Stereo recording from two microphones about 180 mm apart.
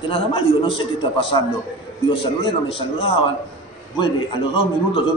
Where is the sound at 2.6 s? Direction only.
30° left (ahead or behind).